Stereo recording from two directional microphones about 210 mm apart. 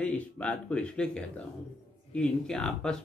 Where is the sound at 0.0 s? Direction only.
5° left (ahead or behind).